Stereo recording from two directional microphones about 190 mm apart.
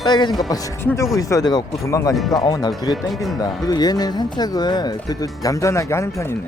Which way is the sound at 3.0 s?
Centre (ahead or behind).